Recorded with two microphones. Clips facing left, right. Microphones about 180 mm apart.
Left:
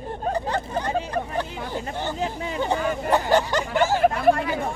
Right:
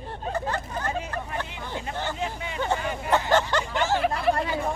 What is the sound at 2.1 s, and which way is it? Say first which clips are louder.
Hubbub: left 4 dB; 35° left (ahead or behind).